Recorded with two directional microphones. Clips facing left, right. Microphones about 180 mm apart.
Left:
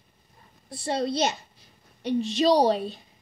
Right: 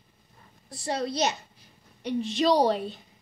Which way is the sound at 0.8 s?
25° left (ahead or behind).